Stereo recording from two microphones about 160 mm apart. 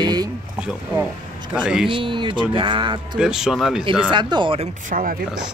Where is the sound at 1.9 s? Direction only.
30° right (ahead or behind).